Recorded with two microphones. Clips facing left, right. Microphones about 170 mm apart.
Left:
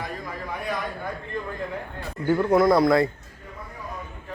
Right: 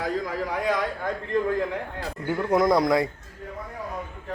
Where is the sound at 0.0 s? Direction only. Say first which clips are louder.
Right 6 dB; 90° right.